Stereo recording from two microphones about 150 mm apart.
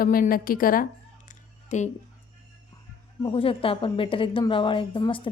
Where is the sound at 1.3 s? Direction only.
55° left (ahead or behind).